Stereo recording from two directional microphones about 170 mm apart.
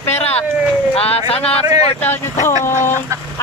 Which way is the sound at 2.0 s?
10° left (ahead or behind).